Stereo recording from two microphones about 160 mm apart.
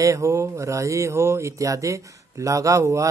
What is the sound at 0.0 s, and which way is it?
Speech, 20° right (ahead or behind).